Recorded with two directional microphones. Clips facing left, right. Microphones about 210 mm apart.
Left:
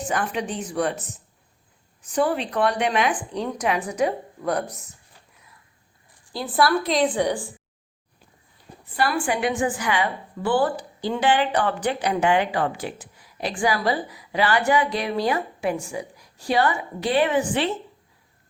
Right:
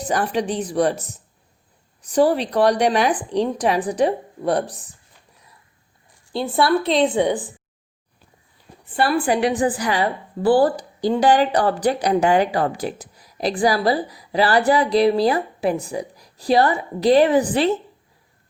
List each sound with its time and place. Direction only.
0.0 s a woman's voice: 35° right (ahead or behind)
6.3 s a woman's voice: 25° right (ahead or behind)
8.9 s a woman's voice: 30° right (ahead or behind)